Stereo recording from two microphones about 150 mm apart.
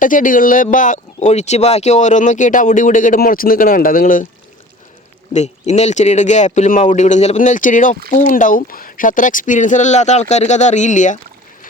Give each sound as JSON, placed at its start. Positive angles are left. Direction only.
{"t": 0.0, "sound": "speech", "side_deg": 65}
{"t": 5.3, "sound": "a man's voice", "side_deg": 50}